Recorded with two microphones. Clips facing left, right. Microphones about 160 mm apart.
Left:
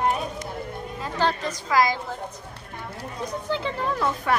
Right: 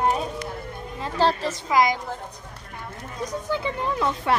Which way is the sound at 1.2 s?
35° right (ahead or behind).